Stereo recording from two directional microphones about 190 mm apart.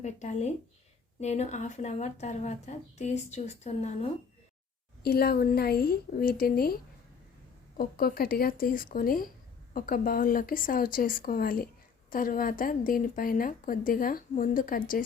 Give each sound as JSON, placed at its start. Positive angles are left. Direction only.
{"t": 0.0, "sound": "speech", "side_deg": 40}
{"t": 5.0, "sound": "a woman's voice", "side_deg": 55}
{"t": 7.8, "sound": "a woman's voice", "side_deg": 50}